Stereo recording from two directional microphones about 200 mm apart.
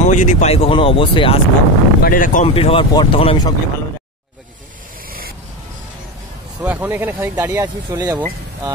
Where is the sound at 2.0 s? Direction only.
45° left (ahead or behind).